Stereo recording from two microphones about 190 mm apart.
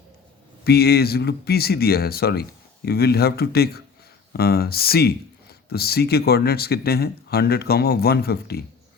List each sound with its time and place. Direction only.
0.6 s speech: 55° left (ahead or behind)